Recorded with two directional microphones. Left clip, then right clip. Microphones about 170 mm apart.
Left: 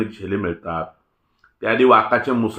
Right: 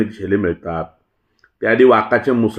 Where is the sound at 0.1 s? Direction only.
30° right (ahead or behind).